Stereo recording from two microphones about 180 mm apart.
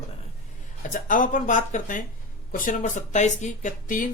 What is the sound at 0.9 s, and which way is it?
Speech, 45° left (ahead or behind).